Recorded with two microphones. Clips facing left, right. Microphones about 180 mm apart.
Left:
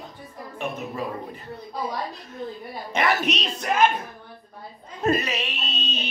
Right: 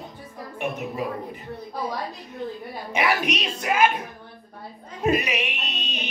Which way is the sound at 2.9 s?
10° right (ahead or behind).